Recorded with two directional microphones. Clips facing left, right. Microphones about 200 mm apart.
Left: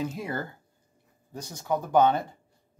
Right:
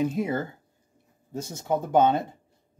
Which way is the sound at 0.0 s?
20° right (ahead or behind).